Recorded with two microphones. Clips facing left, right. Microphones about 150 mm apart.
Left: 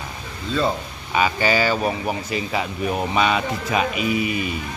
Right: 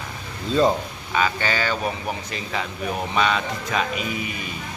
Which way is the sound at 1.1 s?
10° left (ahead or behind).